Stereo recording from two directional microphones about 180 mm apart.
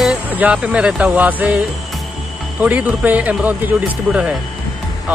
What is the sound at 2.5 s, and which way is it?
Speech, 10° right (ahead or behind).